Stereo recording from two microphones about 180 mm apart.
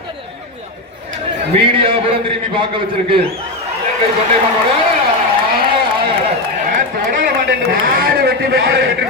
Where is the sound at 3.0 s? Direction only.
30° right (ahead or behind).